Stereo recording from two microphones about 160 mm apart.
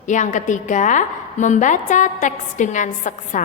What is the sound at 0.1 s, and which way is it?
A woman's voice, 50° left (ahead or behind).